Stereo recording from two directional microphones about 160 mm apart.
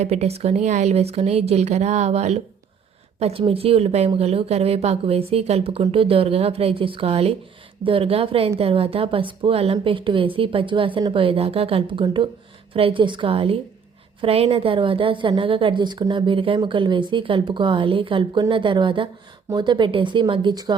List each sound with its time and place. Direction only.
0.0 s a woman's voice: 45° right (ahead or behind); by 20.7 s 25° right (ahead or behind)